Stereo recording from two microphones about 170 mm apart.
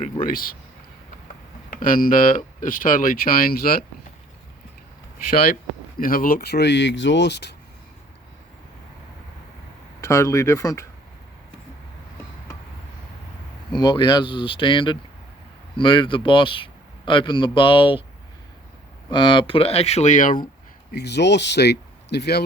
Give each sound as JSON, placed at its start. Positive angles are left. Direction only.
{"t": 0.0, "sound": "speech", "side_deg": 55}
{"t": 1.7, "sound": "speech", "side_deg": 55}
{"t": 6.0, "sound": "speech", "side_deg": 55}
{"t": 10.0, "sound": "speech", "side_deg": 15}
{"t": 13.7, "sound": "speech", "side_deg": 25}
{"t": 19.1, "sound": "speech", "side_deg": 30}
{"t": 20.9, "sound": "speech", "side_deg": 80}